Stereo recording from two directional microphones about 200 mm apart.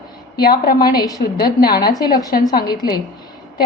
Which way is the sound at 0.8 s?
20° left (ahead or behind).